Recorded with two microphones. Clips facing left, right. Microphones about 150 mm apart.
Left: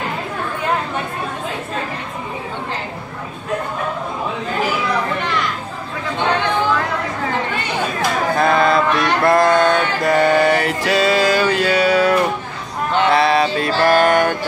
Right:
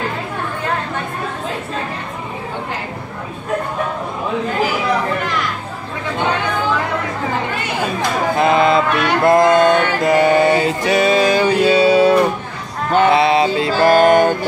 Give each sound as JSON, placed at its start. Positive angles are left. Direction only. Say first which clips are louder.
{"t": 8.4, "sound": "mantra", "louder": "right 2 dB", "side_deg": -20}
{"t": 13.1, "sound": "music", "louder": "right 2 dB", "side_deg": -20}